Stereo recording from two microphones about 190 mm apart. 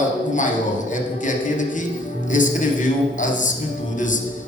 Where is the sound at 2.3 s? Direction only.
40° left (ahead or behind).